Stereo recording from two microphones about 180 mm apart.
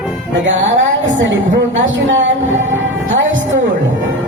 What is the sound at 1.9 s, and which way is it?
Music, 90° right.